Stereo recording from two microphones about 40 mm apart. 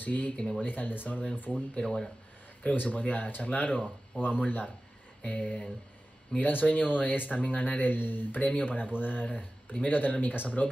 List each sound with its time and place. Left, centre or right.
0.0 s speech: left
0.4 s speech: left
0.7 s speech: left
1.5 s speech: left
2.6 s speech: left
5.2 s speech: left
7.9 s speech: left
9.3 s speech: left